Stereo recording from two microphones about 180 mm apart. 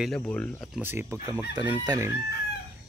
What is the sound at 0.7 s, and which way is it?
Speech, 10° right (ahead or behind).